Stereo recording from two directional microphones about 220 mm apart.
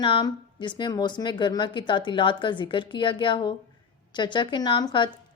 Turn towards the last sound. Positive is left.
turn(degrees=20)  # may be behind; listen again after turning